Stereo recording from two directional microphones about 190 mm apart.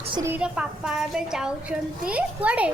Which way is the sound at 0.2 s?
10° right (ahead or behind).